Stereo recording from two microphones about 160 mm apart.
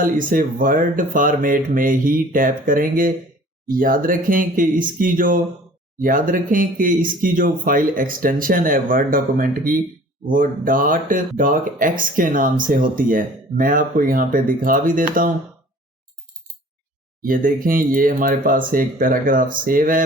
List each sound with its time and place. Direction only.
0.0 s speech: 60° right (ahead or behind)
17.2 s speech: 60° right (ahead or behind)